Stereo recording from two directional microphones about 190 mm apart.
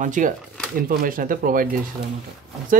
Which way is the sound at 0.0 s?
45° right (ahead or behind).